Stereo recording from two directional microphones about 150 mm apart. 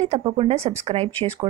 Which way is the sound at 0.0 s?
35° right (ahead or behind).